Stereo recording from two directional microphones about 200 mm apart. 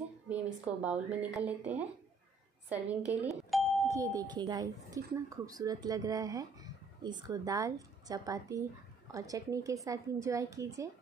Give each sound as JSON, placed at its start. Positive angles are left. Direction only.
{"t": 0.3, "sound": "speech", "side_deg": -5}